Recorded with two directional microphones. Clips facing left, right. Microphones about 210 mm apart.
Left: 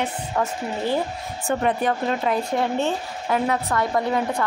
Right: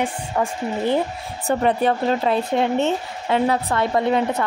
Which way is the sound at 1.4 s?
30° right (ahead or behind).